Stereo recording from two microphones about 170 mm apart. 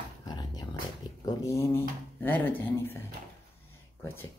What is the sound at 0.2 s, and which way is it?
Dog, 25° left (ahead or behind).